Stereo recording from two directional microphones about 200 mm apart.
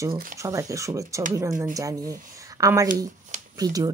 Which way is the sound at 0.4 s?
15° right (ahead or behind).